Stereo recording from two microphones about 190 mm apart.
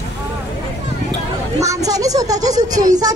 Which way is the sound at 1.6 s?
15° right (ahead or behind).